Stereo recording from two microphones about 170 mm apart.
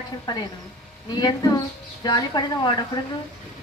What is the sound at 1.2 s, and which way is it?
A woman's voice, 20° left (ahead or behind).